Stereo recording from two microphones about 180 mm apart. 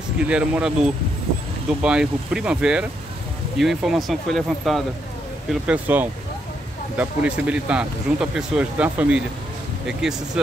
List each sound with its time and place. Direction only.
0.3 s speech: 5° right (ahead or behind)